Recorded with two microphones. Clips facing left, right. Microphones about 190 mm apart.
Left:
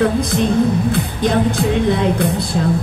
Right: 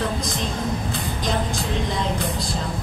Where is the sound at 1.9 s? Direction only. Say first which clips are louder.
Left 9 dB; 60° left (ahead or behind).